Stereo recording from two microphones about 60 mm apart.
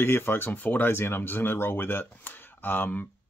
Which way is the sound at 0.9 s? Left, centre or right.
Left.